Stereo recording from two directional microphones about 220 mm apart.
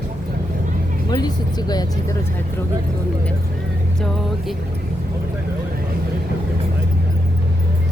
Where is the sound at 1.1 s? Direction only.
20° left (ahead or behind).